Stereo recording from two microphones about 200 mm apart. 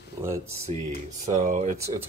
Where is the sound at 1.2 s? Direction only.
35° right (ahead or behind).